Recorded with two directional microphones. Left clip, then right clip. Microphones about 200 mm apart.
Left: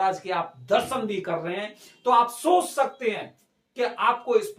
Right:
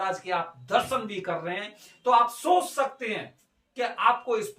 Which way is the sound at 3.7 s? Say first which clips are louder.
Even; 20° left (ahead or behind).